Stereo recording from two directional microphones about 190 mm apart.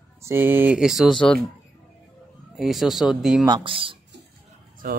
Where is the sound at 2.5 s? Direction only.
Centre (ahead or behind).